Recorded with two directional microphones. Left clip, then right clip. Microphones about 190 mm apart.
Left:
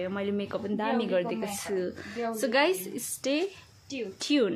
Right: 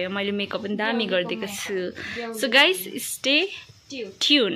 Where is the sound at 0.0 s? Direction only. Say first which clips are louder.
Right 5 dB; 10° right (ahead or behind).